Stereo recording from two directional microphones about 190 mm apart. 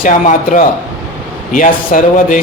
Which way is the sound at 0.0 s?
40° left (ahead or behind).